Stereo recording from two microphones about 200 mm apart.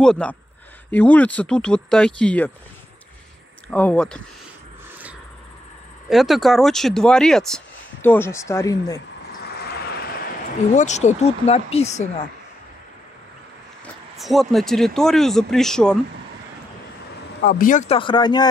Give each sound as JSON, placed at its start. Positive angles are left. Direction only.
{"t": 0.0, "sound": "speech", "side_deg": 5}
{"t": 3.7, "sound": "speech", "side_deg": 5}
{"t": 6.0, "sound": "speech", "side_deg": 0}
{"t": 9.6, "sound": "vehicle", "side_deg": 55}
{"t": 10.7, "sound": "speech", "side_deg": 35}
{"t": 14.1, "sound": "speech", "side_deg": 0}
{"t": 17.5, "sound": "speech", "side_deg": 40}